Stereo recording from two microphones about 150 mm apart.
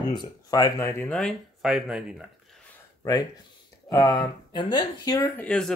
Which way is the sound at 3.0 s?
25° left (ahead or behind).